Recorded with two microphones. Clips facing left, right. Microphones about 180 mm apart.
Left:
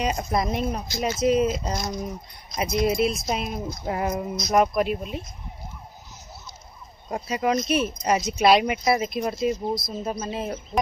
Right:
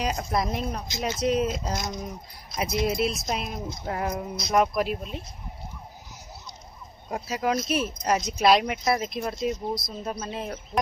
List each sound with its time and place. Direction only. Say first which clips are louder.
0.0 s speech: left 2 dB; centre (ahead or behind)
7.1 s speech: left 3 dB; centre (ahead or behind)